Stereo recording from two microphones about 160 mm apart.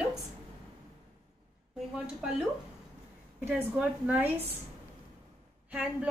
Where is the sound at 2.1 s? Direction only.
5° right (ahead or behind).